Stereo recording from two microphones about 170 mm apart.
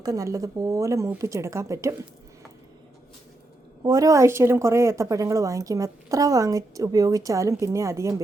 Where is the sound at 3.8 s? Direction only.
20° right (ahead or behind).